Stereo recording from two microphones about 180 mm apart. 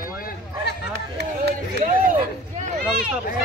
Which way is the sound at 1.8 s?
45° right (ahead or behind).